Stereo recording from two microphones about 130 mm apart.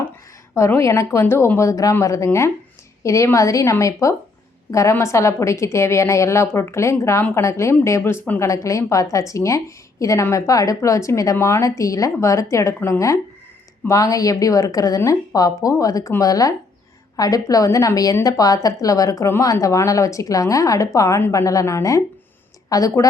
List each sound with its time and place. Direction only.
0.5 s a woman's voice: 20° left (ahead or behind)